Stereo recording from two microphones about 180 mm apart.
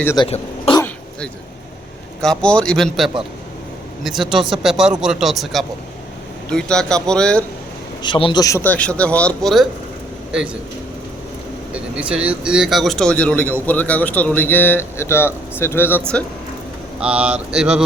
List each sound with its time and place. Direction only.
0.2 s speech: 30° left (ahead or behind)
2.2 s speech: 5° left (ahead or behind)
8.0 s speech: 25° left (ahead or behind); by 9.6 s centre (ahead or behind)
11.7 s speech: 5° right (ahead or behind)
17.0 s mantra: 5° right (ahead or behind)